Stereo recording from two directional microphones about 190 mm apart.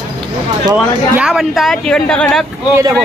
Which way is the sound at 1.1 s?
5° right (ahead or behind).